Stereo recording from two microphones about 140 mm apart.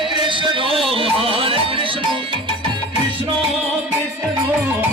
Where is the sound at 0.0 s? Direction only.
35° right (ahead or behind).